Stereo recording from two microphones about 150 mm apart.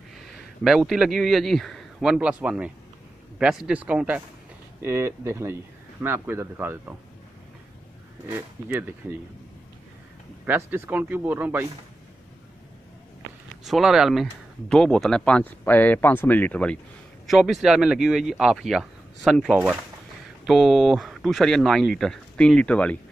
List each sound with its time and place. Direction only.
0.1 s a man's voice: centre (ahead or behind)
8.3 s speech: 15° right (ahead or behind)
10.4 s speech: 10° right (ahead or behind)
13.7 s speech: centre (ahead or behind)
17.3 s speech: centre (ahead or behind)